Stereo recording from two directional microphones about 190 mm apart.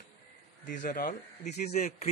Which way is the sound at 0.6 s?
45° left (ahead or behind).